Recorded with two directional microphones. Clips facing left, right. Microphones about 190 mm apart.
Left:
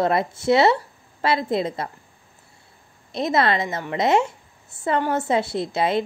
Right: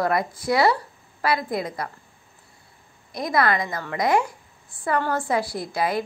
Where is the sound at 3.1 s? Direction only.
25° left (ahead or behind).